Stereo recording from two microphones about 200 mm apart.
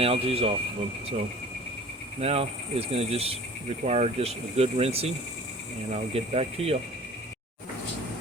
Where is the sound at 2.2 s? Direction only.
30° right (ahead or behind).